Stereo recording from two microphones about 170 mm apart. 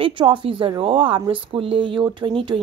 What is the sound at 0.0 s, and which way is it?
Speech, 30° right (ahead or behind).